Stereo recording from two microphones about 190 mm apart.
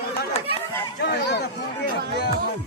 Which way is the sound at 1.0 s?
60° left (ahead or behind).